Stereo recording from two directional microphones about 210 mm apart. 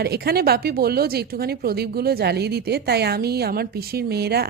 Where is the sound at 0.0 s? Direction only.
50° right (ahead or behind).